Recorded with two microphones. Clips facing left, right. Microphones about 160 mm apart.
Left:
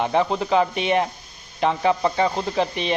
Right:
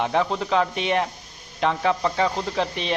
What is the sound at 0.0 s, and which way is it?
A man's voice, 5° left (ahead or behind).